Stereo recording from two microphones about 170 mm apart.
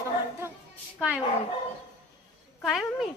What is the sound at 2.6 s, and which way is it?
Speech, centre (ahead or behind).